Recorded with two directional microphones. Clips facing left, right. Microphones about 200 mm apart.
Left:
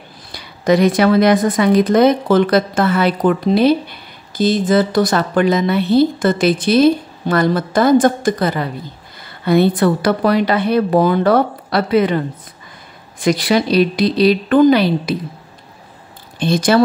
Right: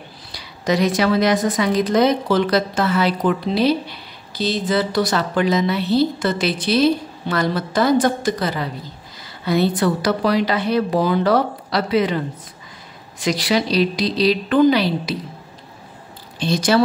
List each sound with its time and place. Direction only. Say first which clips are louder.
0.3 s a woman's voice: left 6 dB; 55° left (ahead or behind)
13.2 s a woman's voice: left 4 dB; 55° left (ahead or behind)
16.3 s a woman's voice: left 4 dB; 55° left (ahead or behind)